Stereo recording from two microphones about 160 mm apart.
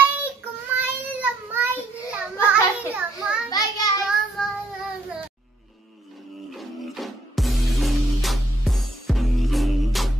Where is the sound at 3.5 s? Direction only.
25° left (ahead or behind).